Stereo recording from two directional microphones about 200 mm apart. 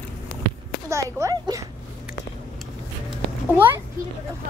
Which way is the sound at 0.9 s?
15° right (ahead or behind).